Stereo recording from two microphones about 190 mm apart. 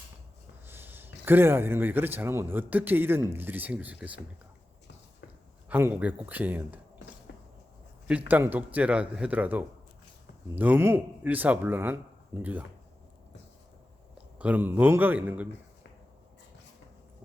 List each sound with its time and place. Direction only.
0.7 s a man's voice: 10° right (ahead or behind)
5.6 s a man's voice: 10° right (ahead or behind)
7.3 s a sound: 65° left (ahead or behind)
8.0 s a man's voice: 10° right (ahead or behind)
14.3 s a man's voice: 10° right (ahead or behind)